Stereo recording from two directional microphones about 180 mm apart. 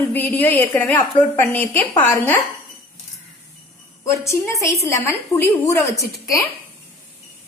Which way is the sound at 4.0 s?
15° left (ahead or behind).